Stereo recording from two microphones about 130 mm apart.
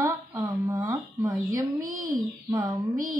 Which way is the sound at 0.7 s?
25° right (ahead or behind).